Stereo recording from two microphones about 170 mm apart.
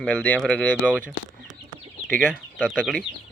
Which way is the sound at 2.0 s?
10° left (ahead or behind).